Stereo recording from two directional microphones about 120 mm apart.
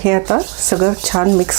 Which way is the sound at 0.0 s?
25° right (ahead or behind).